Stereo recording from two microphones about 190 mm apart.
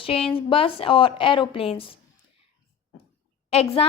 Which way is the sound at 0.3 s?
30° left (ahead or behind).